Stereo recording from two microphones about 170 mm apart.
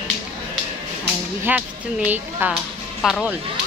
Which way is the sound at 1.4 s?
10° right (ahead or behind).